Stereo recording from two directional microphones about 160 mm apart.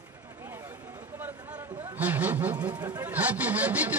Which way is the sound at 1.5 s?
15° right (ahead or behind).